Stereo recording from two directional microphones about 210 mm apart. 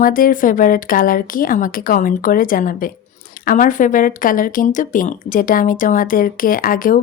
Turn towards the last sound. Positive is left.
turn(degrees=40)  # may be behind; listen again after turning